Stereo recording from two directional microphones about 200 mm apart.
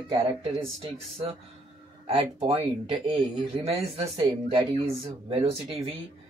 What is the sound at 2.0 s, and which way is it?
Speech, 30° right (ahead or behind).